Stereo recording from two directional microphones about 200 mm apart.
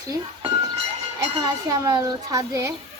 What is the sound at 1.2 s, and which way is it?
Speech, 15° right (ahead or behind).